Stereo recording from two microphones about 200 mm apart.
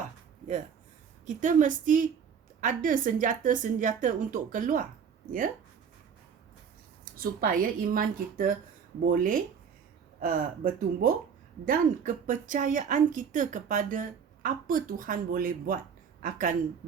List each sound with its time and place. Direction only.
1.3 s a woman's voice: 40° right (ahead or behind)
7.0 s a woman's voice: 45° right (ahead or behind)